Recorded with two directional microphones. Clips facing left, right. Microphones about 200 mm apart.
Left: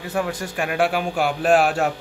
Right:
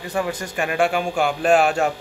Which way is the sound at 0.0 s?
Centre (ahead or behind).